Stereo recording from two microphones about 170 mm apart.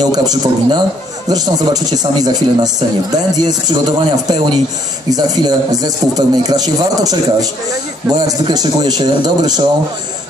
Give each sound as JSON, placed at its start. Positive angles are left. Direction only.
{"t": 0.0, "sound": "a man's voice", "side_deg": -25}